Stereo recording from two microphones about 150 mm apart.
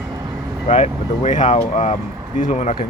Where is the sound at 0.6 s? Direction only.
50° left (ahead or behind).